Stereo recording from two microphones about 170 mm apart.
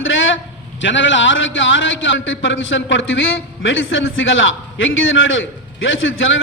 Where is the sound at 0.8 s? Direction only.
90° left.